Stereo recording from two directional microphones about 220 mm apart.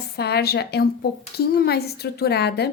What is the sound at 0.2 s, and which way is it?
A woman's voice, 45° left (ahead or behind).